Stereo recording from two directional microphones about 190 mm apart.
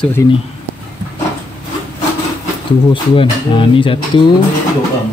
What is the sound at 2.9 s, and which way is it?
Speech, 25° left (ahead or behind).